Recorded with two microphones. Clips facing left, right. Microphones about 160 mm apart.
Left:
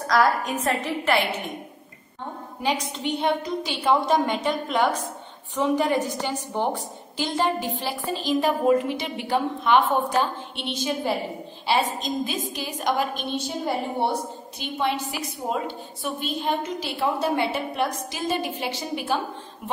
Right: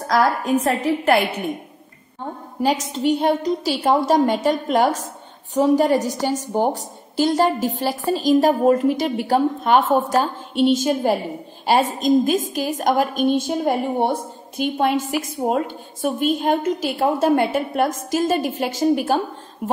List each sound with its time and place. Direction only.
0.1 s a woman's voice: 10° right (ahead or behind)
2.6 s a woman's voice: 40° right (ahead or behind)